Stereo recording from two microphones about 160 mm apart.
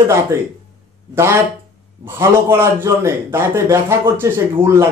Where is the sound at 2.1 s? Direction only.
15° right (ahead or behind).